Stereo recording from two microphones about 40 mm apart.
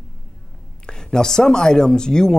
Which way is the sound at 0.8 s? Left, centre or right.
Centre.